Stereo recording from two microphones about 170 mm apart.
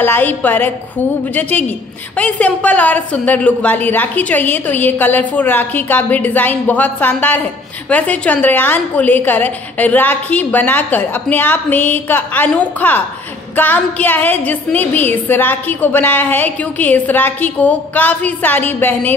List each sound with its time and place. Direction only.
0.0 s a woman's voice: 10° left (ahead or behind)